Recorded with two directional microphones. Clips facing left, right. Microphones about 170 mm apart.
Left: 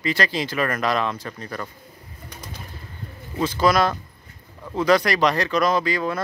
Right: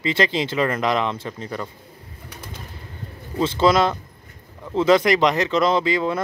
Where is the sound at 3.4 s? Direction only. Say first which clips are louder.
Right 2 dB; 25° right (ahead or behind).